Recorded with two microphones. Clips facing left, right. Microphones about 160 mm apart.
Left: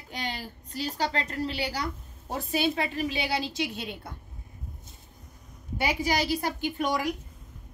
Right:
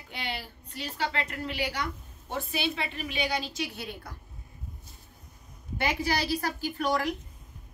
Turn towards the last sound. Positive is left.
turn(degrees=15)  # may be behind; listen again after turning